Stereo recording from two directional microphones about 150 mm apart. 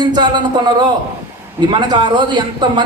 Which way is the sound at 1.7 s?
30° right (ahead or behind).